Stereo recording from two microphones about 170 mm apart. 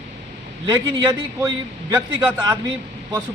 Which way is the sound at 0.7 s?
25° right (ahead or behind).